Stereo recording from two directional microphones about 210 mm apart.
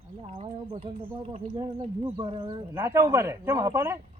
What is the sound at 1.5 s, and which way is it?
Speech, 25° right (ahead or behind).